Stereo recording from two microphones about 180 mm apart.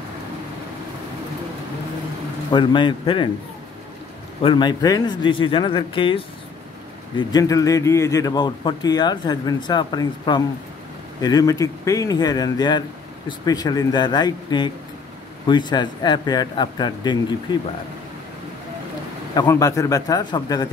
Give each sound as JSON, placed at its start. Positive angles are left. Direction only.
{"t": 2.5, "sound": "speech", "side_deg": 25}
{"t": 4.4, "sound": "speech", "side_deg": 25}
{"t": 19.3, "sound": "speech", "side_deg": 20}